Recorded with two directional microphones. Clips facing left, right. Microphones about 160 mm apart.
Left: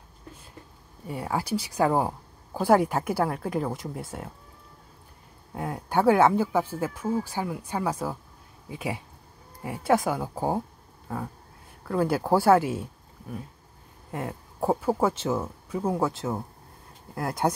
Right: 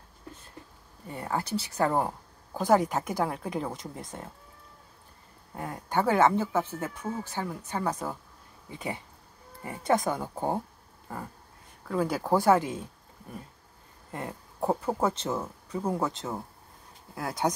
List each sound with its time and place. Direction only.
1.0 s speech: 10° left (ahead or behind)
5.5 s speech: 10° left (ahead or behind)
11.9 s speech: 5° left (ahead or behind)
14.1 s speech: 5° left (ahead or behind)